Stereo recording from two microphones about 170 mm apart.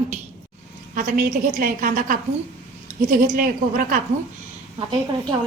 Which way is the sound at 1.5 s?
55° right (ahead or behind).